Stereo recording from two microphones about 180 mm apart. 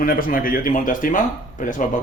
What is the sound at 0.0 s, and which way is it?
Speech, 50° left (ahead or behind).